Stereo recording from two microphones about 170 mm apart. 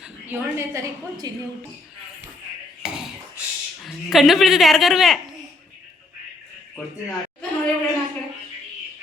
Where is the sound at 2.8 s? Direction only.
5° right (ahead or behind).